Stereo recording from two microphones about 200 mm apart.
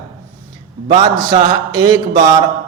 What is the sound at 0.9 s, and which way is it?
A man's voice, 20° right (ahead or behind).